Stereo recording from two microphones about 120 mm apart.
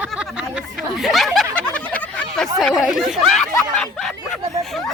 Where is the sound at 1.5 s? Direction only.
10° left (ahead or behind).